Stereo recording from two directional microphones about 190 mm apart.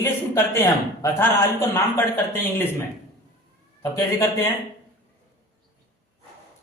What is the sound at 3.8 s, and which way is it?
Speech, 15° left (ahead or behind).